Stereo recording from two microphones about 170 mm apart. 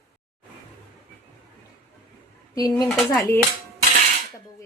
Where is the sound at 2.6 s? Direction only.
20° left (ahead or behind).